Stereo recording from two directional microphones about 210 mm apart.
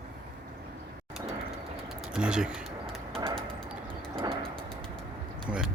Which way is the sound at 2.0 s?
5° right (ahead or behind).